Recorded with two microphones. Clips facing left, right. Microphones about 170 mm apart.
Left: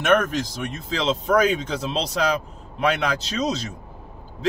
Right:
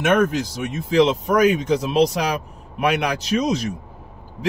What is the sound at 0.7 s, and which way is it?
Speech, 15° right (ahead or behind).